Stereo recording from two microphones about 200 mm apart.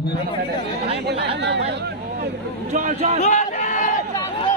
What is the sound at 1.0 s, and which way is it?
Speech, 55° right (ahead or behind).